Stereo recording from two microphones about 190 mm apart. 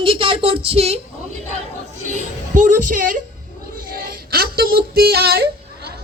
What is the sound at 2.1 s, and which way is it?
A woman's voice, 40° right (ahead or behind).